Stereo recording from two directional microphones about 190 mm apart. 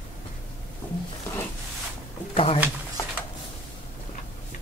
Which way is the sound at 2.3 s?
30° left (ahead or behind).